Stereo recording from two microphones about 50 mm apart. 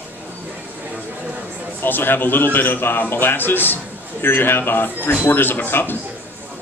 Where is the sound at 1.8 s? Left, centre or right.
Left.